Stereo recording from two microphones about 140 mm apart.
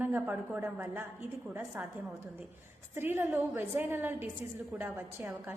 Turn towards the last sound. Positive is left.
turn(degrees=-15)  # may be behind; listen again after turning